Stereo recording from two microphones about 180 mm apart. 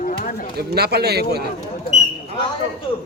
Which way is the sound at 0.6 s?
65° right (ahead or behind).